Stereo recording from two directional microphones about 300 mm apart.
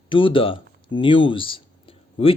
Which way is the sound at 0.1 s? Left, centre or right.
Centre.